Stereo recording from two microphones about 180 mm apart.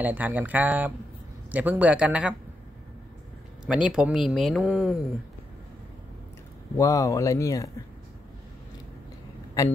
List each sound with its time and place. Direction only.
0.0 s speech: 10° right (ahead or behind)
3.6 s speech: 5° right (ahead or behind)
6.8 s speech: 20° left (ahead or behind)